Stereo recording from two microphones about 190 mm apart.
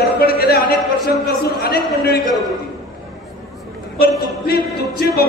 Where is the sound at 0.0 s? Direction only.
55° left (ahead or behind).